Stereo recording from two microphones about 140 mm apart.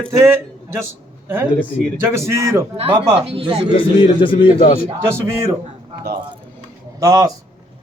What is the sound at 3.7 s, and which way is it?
Speech, 35° left (ahead or behind).